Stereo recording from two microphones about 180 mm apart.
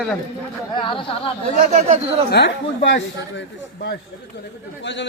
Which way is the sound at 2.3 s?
75° left (ahead or behind).